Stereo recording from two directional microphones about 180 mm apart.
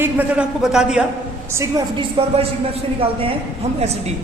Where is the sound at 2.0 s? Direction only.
30° right (ahead or behind).